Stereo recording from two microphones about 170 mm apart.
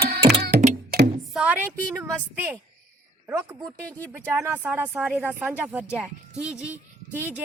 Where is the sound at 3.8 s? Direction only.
5° left (ahead or behind).